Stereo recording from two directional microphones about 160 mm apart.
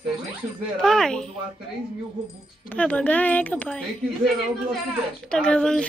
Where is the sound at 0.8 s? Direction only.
5° left (ahead or behind).